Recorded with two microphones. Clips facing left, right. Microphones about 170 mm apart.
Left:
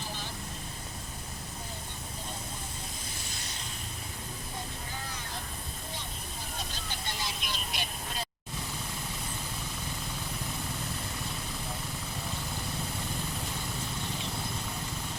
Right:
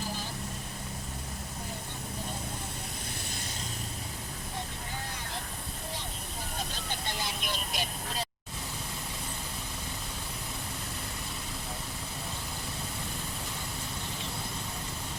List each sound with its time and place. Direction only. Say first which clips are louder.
7.4 s vehicle: right 2 dB; 45° right (ahead or behind)